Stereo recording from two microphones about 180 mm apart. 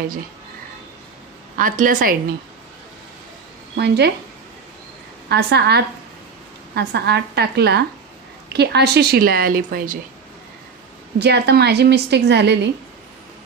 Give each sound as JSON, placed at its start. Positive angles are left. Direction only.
{"t": 1.6, "sound": "a woman's voice", "side_deg": -50}
{"t": 3.7, "sound": "a woman's voice", "side_deg": -70}
{"t": 5.3, "sound": "a woman's voice", "side_deg": -70}
{"t": 11.1, "sound": "a woman's voice", "side_deg": -65}